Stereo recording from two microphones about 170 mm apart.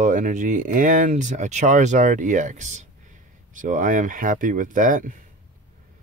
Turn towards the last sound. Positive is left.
turn(degrees=-50)  # may be behind; listen again after turning